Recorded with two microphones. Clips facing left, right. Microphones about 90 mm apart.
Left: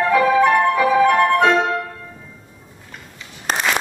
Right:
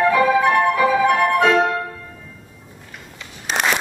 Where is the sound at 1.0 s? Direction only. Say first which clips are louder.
Left 1 dB; 5° right (ahead or behind).